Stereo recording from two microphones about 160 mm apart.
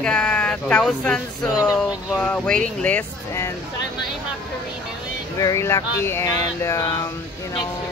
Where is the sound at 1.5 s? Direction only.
5° right (ahead or behind).